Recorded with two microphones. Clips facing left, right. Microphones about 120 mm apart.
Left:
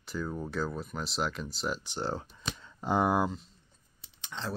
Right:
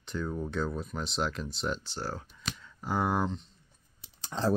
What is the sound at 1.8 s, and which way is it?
Speech, 20° left (ahead or behind).